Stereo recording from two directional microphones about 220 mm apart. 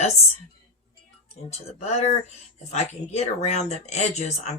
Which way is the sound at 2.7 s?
30° left (ahead or behind).